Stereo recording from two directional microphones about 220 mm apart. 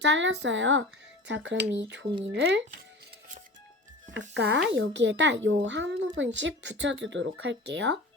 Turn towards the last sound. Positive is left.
turn(degrees=-55)  # may be behind; listen again after turning